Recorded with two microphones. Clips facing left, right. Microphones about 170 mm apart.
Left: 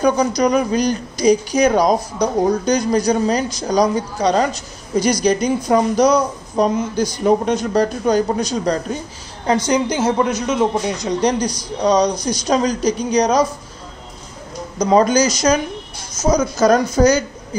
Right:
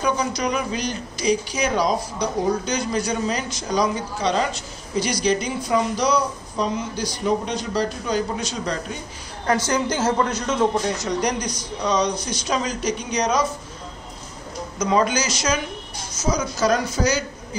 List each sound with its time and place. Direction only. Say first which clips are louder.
0.0 s speech: left 7 dB; 40° left (ahead or behind)
9.5 s speech: left 4 dB; 15° left (ahead or behind); by 13.5 s 35° left (ahead or behind)
14.8 s speech: left 7 dB; 35° left (ahead or behind)